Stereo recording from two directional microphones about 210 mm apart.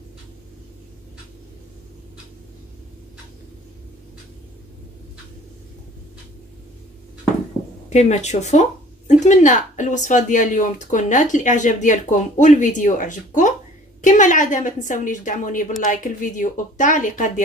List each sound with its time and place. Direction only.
7.9 s a woman's voice: 30° left (ahead or behind)